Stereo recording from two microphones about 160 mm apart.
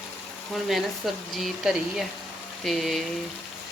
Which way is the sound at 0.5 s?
Centre (ahead or behind).